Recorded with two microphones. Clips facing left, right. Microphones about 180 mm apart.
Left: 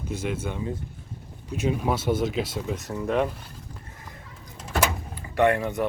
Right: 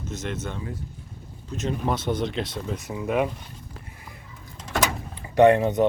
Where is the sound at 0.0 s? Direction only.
10° left (ahead or behind).